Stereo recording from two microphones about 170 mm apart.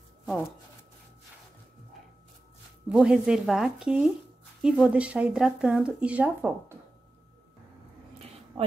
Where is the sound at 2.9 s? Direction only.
5° right (ahead or behind).